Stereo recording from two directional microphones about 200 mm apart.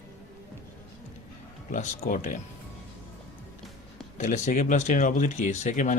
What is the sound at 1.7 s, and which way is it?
Speech, 40° left (ahead or behind).